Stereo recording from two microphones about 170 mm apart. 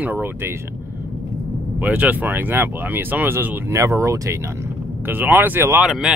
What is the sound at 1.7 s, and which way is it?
Speech, 10° right (ahead or behind).